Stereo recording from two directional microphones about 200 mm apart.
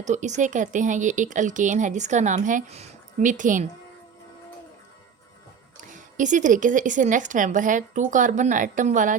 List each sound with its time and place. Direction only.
0.0 s speech: 35° right (ahead or behind)
5.9 s speech: 40° right (ahead or behind)